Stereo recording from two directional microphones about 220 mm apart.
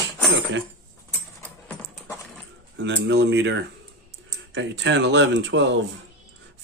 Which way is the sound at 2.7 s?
55° right (ahead or behind).